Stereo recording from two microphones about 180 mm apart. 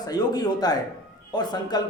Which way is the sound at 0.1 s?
20° left (ahead or behind).